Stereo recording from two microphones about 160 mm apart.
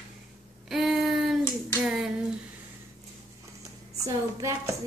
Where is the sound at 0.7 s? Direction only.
Centre (ahead or behind).